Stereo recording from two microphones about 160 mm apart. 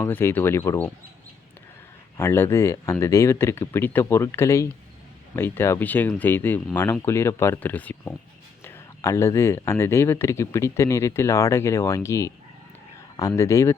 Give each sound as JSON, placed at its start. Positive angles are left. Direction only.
{"t": 0.0, "sound": "speech", "side_deg": 15}
{"t": 2.1, "sound": "speech", "side_deg": 15}